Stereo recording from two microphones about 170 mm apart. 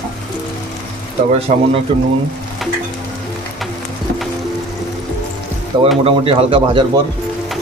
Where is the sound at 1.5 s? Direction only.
45° right (ahead or behind).